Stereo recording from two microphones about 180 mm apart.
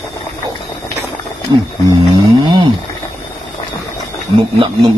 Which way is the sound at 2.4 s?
25° right (ahead or behind).